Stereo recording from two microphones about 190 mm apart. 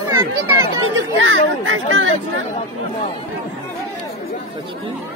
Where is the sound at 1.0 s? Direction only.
90° right.